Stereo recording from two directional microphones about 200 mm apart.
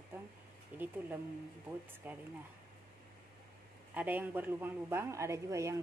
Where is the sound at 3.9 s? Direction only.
10° right (ahead or behind).